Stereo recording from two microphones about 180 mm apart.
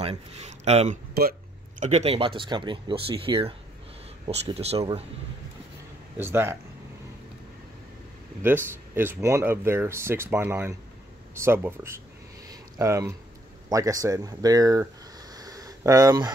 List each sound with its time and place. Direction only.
0.0 s speech: 35° right (ahead or behind)
6.1 s speech: 10° right (ahead or behind)
8.4 s speech: 10° right (ahead or behind)
12.4 s a sound: 20° right (ahead or behind)
13.7 s speech: 20° right (ahead or behind)
15.3 s a sound: 20° right (ahead or behind)